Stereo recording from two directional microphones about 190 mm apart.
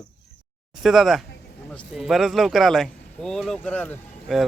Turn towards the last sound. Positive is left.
turn(degrees=5)  # may be behind; listen again after turning